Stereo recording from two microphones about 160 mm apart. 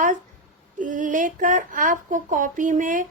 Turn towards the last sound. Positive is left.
turn(degrees=-55)  # may be behind; listen again after turning